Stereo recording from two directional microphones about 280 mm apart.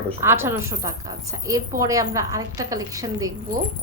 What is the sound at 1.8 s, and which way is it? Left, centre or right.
A woman's voice, centre.